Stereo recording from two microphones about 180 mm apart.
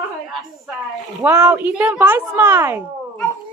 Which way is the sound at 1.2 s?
15° right (ahead or behind).